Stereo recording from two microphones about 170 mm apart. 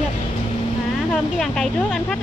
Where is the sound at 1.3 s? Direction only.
5° left (ahead or behind).